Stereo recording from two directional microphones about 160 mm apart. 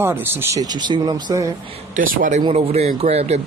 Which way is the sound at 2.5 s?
40° right (ahead or behind).